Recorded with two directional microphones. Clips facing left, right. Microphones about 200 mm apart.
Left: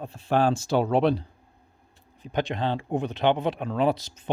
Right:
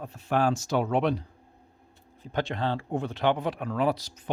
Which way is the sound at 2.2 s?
15° left (ahead or behind).